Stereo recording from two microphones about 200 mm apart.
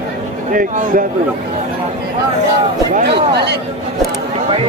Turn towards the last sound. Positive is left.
turn(degrees=-55)  # may be behind; listen again after turning